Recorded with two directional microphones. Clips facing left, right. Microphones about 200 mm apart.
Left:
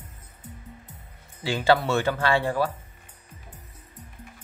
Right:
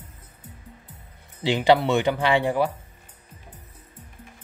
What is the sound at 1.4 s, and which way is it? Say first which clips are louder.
Speech: right 3 dB; 20° right (ahead or behind).